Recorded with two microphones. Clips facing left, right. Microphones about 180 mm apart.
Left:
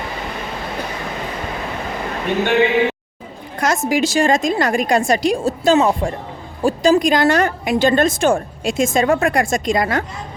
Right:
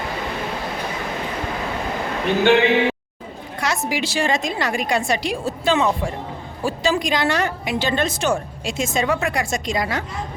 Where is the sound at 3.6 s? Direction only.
45° left (ahead or behind).